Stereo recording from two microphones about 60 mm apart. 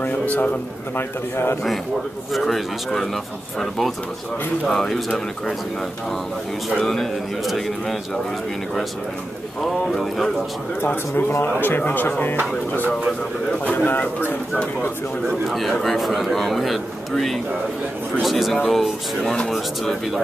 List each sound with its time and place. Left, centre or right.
0.0 s a man's voice: left
0.9 s a man's voice: left
2.3 s speech: centre
6.8 s speech: centre
9.6 s speech: centre
11.2 s a man's voice: left
13.7 s speech: left
15.4 s speech: centre